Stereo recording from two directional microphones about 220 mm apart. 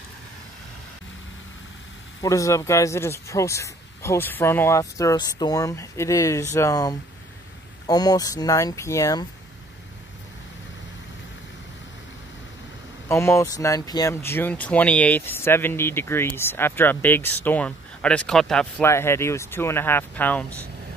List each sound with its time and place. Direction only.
2.2 s speech: 15° left (ahead or behind)
13.1 s speech: 10° left (ahead or behind)